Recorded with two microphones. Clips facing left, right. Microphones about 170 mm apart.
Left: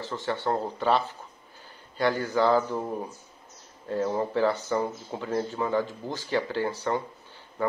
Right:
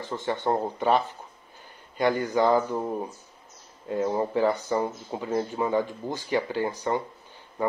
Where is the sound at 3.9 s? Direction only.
15° right (ahead or behind).